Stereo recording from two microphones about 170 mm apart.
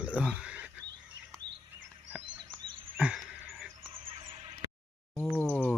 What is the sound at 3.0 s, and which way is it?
Frog, 5° right (ahead or behind).